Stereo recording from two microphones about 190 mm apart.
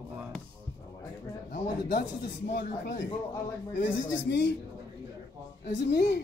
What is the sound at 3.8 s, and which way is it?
Speech, 80° left.